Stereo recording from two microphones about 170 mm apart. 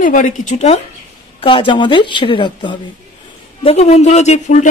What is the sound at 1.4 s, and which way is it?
A woman's voice, 30° left (ahead or behind).